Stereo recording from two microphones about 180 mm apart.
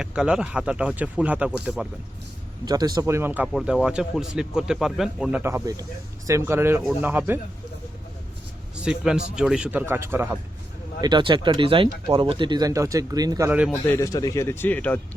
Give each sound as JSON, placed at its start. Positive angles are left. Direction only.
{"t": 0.0, "sound": "speech", "side_deg": -5}
{"t": 2.6, "sound": "speech", "side_deg": -20}
{"t": 8.7, "sound": "speech", "side_deg": -5}
{"t": 11.0, "sound": "speech", "side_deg": -25}
{"t": 13.5, "sound": "speech", "side_deg": -5}
{"t": 13.8, "sound": "speech", "side_deg": 15}